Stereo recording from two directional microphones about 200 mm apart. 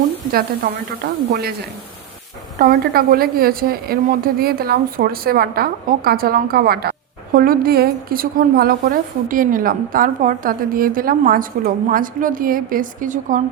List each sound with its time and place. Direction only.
0.3 s a woman's voice: 50° right (ahead or behind)
2.6 s a woman's voice: 50° right (ahead or behind)